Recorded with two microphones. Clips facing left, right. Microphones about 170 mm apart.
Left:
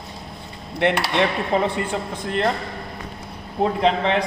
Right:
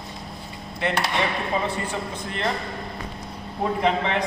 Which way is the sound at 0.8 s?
65° left (ahead or behind).